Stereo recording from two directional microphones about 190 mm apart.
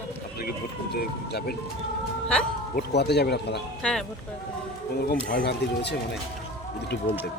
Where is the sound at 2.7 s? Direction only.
60° left (ahead or behind).